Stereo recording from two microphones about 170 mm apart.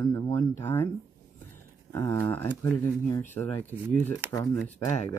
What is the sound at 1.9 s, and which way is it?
Speech, 15° left (ahead or behind).